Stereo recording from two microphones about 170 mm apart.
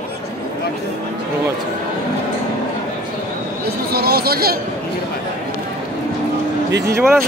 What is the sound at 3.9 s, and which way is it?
Speech, 65° right (ahead or behind).